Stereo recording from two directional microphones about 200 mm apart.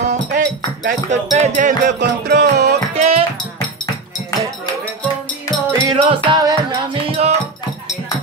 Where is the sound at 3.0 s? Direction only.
30° right (ahead or behind).